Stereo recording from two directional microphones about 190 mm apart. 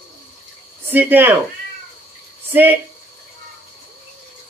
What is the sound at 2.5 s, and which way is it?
Speech, 10° right (ahead or behind).